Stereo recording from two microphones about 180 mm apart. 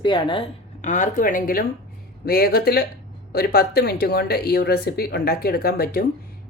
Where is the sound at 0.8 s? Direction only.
45° left (ahead or behind).